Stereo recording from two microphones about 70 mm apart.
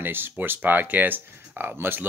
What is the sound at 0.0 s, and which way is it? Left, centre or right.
Speech, right.